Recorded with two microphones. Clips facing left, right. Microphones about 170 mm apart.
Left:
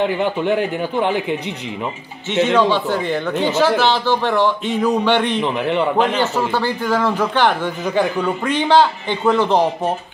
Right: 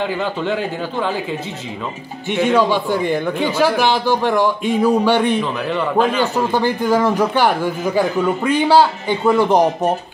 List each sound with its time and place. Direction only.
0.0 s speech: 20° left (ahead or behind)
2.3 s speech: 15° right (ahead or behind)
5.4 s speech: 20° left (ahead or behind)
6.1 s speech: 15° right (ahead or behind)